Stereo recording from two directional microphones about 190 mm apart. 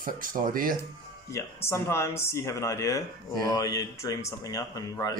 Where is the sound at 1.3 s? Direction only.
15° left (ahead or behind).